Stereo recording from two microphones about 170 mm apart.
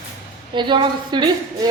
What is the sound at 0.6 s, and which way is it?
Speech, 25° right (ahead or behind).